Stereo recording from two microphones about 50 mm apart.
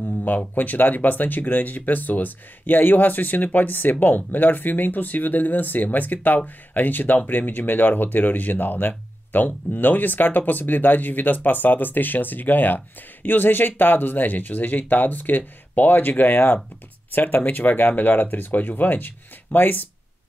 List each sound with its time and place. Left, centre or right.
0.0 s speech: left